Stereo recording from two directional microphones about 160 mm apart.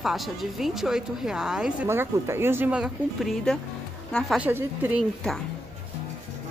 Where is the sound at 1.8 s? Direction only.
15° right (ahead or behind); by 3.6 s centre (ahead or behind).